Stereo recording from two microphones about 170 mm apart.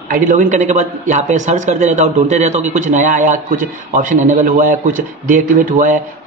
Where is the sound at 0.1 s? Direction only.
50° right (ahead or behind).